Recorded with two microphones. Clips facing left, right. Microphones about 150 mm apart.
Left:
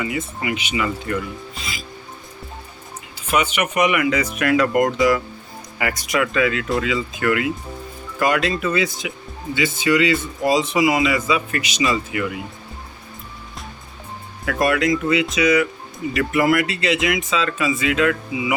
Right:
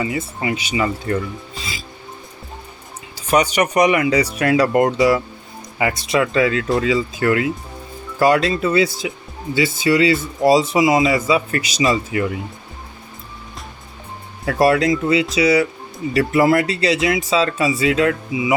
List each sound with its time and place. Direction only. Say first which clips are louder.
0.0 s speech: right 2 dB; 30° right (ahead or behind)
3.2 s speech: right 4 dB; 40° right (ahead or behind)
14.4 s speech: right 4 dB; 30° right (ahead or behind)